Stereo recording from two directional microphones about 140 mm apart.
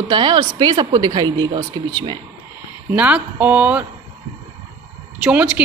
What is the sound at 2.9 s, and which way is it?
Speech, 10° right (ahead or behind).